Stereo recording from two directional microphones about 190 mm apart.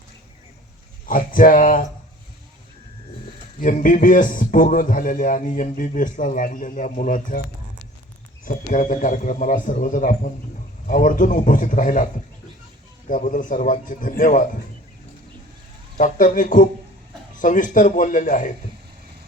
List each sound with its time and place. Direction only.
1.0 s a man's voice: 45° left (ahead or behind)
3.6 s a man's voice: 45° left (ahead or behind)
8.4 s a man's voice: 45° left (ahead or behind)
13.1 s a man's voice: 45° left (ahead or behind)
16.0 s a man's voice: 45° left (ahead or behind)